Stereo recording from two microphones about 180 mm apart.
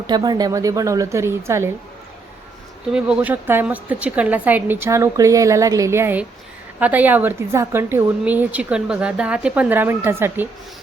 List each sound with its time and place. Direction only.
0.1 s a woman's voice: 25° right (ahead or behind)
2.9 s a woman's voice: 5° right (ahead or behind)